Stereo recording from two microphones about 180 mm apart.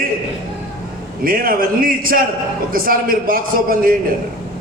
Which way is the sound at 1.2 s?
55° right (ahead or behind).